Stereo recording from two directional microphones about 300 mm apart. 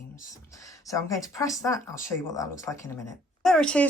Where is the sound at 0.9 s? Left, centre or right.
Centre.